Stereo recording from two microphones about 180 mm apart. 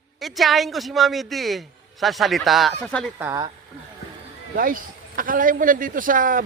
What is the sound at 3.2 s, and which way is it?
Speech, 10° right (ahead or behind).